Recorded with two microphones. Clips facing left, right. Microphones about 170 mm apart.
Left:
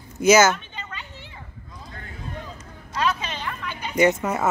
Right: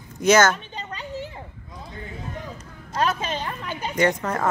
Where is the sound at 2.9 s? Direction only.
45° right (ahead or behind).